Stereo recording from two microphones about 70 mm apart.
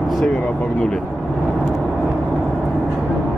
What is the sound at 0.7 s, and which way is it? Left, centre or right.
Speech, centre.